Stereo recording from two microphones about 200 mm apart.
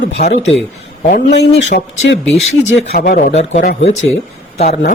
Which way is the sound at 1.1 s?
40° left (ahead or behind).